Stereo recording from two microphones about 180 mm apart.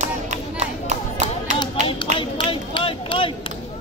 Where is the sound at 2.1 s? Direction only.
30° left (ahead or behind).